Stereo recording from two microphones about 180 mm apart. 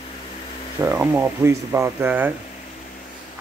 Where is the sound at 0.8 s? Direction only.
10° right (ahead or behind).